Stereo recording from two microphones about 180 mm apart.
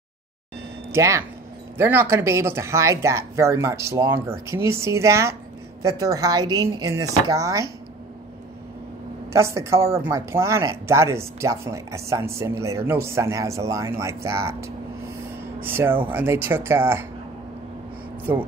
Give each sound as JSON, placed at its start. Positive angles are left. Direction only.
{"t": 0.9, "sound": "speech", "side_deg": -15}
{"t": 9.3, "sound": "speech", "side_deg": -15}